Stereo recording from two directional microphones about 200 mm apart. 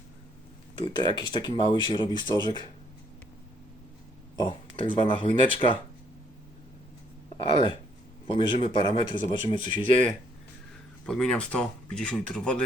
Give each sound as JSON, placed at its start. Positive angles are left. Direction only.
{"t": 0.8, "sound": "speech", "side_deg": 25}
{"t": 4.4, "sound": "speech", "side_deg": 25}
{"t": 7.3, "sound": "speech", "side_deg": 25}
{"t": 11.0, "sound": "speech", "side_deg": 5}